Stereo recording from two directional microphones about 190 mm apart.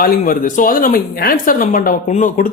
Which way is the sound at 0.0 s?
45° left (ahead or behind).